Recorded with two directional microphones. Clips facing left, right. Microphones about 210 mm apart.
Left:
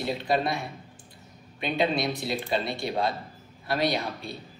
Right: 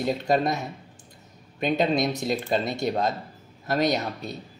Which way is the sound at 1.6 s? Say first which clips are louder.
Right 3 dB; 45° right (ahead or behind).